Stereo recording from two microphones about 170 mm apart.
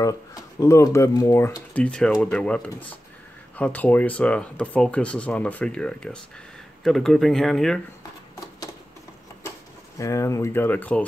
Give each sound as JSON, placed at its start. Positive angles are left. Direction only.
{"t": 0.0, "sound": "speech", "side_deg": 20}
{"t": 9.9, "sound": "speech", "side_deg": 20}